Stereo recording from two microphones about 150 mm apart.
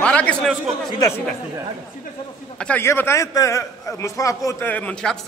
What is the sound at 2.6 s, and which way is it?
A man's voice, 10° left (ahead or behind).